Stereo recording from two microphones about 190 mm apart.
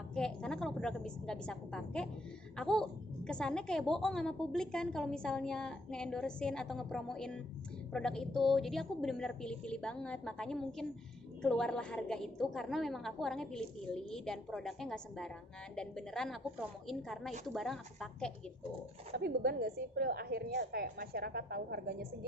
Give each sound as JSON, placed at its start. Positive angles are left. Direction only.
{"t": 0.1, "sound": "a woman's voice", "side_deg": 5}
{"t": 19.1, "sound": "a woman's voice", "side_deg": -55}